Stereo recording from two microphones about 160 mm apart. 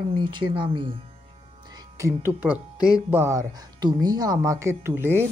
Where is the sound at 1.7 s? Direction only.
15° right (ahead or behind).